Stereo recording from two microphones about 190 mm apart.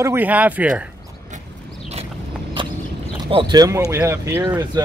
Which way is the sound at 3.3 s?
25° right (ahead or behind).